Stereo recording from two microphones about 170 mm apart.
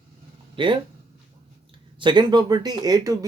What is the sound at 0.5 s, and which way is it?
Speech, 30° right (ahead or behind).